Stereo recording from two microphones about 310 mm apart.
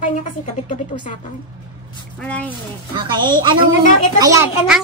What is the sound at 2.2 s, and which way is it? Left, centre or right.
Speech, centre.